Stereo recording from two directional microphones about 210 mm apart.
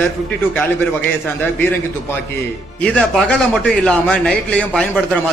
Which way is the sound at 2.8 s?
5° left (ahead or behind).